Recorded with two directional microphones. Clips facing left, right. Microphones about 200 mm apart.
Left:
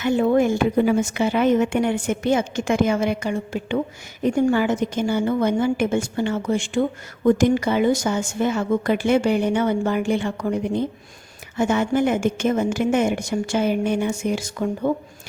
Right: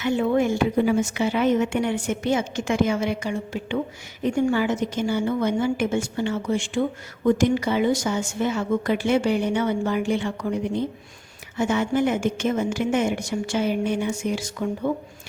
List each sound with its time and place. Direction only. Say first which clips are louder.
0.0 s a woman's voice: left 3 dB; 45° left (ahead or behind)
11.5 s a woman's voice: left 2 dB; 50° left (ahead or behind)